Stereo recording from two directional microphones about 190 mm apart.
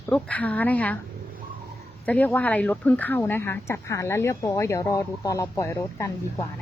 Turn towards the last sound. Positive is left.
turn(degrees=15)  # may be behind; listen again after turning